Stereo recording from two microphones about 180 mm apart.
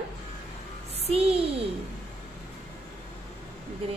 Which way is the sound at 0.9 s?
35° right (ahead or behind).